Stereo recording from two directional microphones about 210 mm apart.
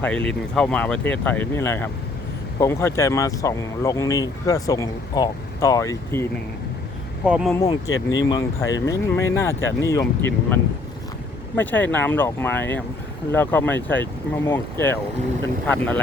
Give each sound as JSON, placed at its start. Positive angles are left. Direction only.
{"t": 0.0, "sound": "speech", "side_deg": 5}
{"t": 7.3, "sound": "speech", "side_deg": -5}
{"t": 7.5, "sound": "speech", "side_deg": 15}
{"t": 7.9, "sound": "speech", "side_deg": 65}
{"t": 8.2, "sound": "speech", "side_deg": 20}
{"t": 11.5, "sound": "speech", "side_deg": 10}